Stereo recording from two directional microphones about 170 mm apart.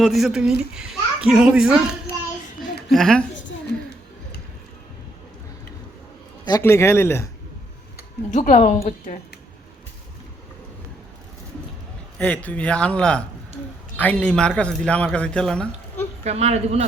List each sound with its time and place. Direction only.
0.0 s a child's voice: centre (ahead or behind)
2.9 s a child's voice: 5° left (ahead or behind)
6.6 s speech: 15° left (ahead or behind)
8.3 s speech: 40° left (ahead or behind)
8.8 s speech: 60° left (ahead or behind)
12.2 s speech: 10° left (ahead or behind)
16.2 s speech: 40° right (ahead or behind)